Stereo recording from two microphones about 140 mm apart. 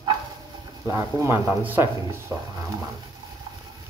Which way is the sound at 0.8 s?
20° right (ahead or behind).